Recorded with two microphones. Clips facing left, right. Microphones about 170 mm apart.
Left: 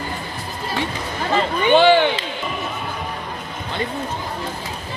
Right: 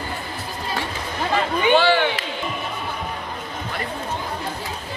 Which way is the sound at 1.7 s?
20° left (ahead or behind).